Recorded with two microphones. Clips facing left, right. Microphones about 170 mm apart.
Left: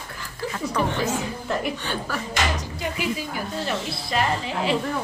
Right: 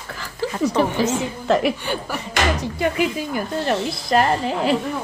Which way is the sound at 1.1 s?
90° right.